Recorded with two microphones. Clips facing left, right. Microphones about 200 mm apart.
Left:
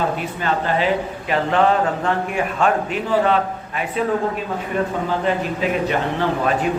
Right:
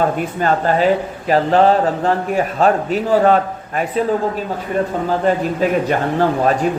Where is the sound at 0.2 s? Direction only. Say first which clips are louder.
Right 5 dB; 45° right (ahead or behind).